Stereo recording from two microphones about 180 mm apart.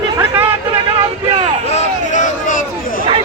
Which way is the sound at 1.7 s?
45° left (ahead or behind).